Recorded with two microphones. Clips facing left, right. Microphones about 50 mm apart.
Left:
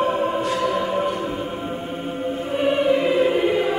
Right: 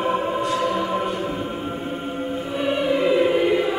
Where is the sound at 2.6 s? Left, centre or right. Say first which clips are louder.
Left 2 dB; left.